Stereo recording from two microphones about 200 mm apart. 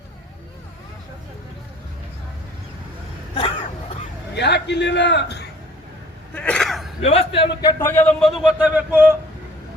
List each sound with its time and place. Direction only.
3.3 s throat clearing: 25° left (ahead or behind)
4.4 s a man's voice: 60° left (ahead or behind)
6.3 s sneeze: 5° left (ahead or behind)
7.0 s a man's voice: 30° left (ahead or behind); by 9.0 s 10° right (ahead or behind)